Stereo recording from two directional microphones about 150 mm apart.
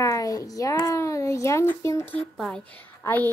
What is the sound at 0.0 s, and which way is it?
A child's voice, 25° left (ahead or behind).